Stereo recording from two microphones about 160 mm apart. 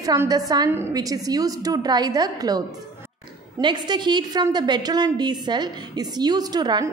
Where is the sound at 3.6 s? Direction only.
30° right (ahead or behind).